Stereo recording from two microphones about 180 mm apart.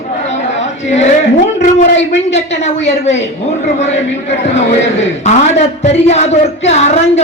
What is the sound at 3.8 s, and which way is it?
A man's voice, 40° left (ahead or behind).